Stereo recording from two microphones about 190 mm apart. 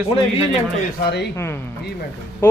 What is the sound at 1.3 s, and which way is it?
Speech, 15° left (ahead or behind).